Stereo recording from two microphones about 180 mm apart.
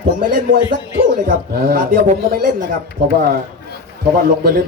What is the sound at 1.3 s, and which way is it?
Speech, 50° right (ahead or behind).